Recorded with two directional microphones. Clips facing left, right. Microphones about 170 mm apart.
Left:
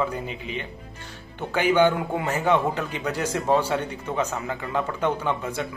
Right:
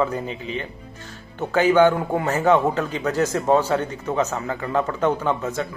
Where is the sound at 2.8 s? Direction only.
10° left (ahead or behind).